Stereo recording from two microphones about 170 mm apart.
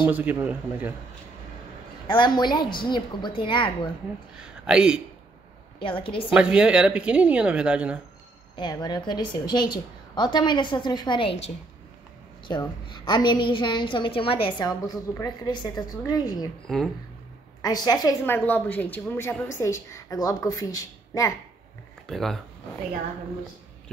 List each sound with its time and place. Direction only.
0.0 s speech: 10° right (ahead or behind)
2.0 s a woman's voice: 25° left (ahead or behind)
4.4 s speech: 5° right (ahead or behind)
5.8 s a woman's voice: 30° left (ahead or behind)
6.3 s speech: 5° right (ahead or behind)
8.5 s a woman's voice: 25° left (ahead or behind)
12.4 s a woman's voice: 25° left (ahead or behind)
14.7 s a woman's voice: 20° left (ahead or behind)
16.6 s speech: 5° left (ahead or behind)
17.6 s a woman's voice: 20° left (ahead or behind)
22.0 s speech: centre (ahead or behind)